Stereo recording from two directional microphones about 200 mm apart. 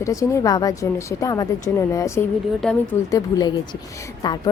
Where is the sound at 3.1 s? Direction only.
20° left (ahead or behind).